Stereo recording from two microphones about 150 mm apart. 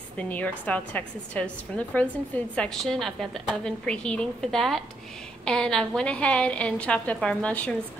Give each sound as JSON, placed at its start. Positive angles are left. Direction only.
{"t": 0.2, "sound": "a woman's voice", "side_deg": 10}